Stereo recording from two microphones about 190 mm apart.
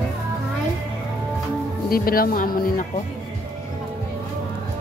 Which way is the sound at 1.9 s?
50° left (ahead or behind).